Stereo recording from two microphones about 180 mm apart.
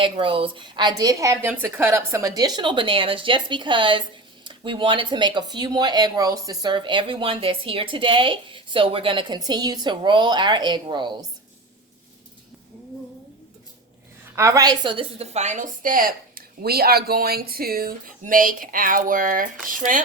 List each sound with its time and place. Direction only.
0.0 s speech: 30° right (ahead or behind)
14.3 s a woman's voice: 15° right (ahead or behind); by 20.0 s 50° right (ahead or behind)